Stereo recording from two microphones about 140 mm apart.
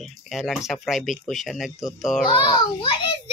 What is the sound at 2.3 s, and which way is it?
Speech, 35° left (ahead or behind).